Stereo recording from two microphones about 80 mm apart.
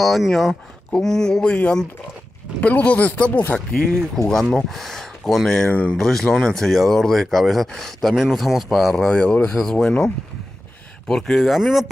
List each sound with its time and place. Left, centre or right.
0.0 s speech: centre
8.9 s speech: centre